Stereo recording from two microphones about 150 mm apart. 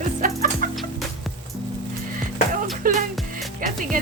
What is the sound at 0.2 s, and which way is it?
Music, 65° right (ahead or behind).